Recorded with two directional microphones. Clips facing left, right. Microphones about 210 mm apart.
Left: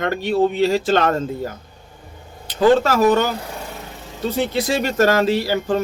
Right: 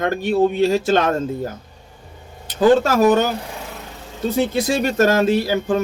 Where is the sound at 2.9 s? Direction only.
45° right (ahead or behind).